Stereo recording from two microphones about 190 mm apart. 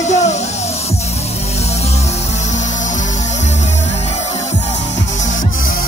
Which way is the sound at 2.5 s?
40° left (ahead or behind).